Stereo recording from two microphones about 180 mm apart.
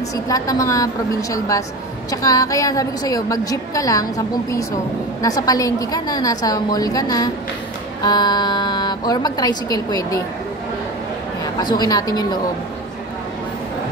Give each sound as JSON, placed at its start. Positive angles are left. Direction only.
{"t": 0.1, "sound": "a woman's voice", "side_deg": 20}
{"t": 2.0, "sound": "a woman's voice", "side_deg": 20}
{"t": 11.6, "sound": "a woman's voice", "side_deg": 20}